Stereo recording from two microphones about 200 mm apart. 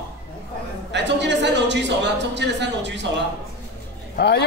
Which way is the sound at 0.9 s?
60° right (ahead or behind).